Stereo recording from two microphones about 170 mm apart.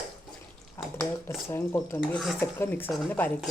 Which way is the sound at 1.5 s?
15° left (ahead or behind).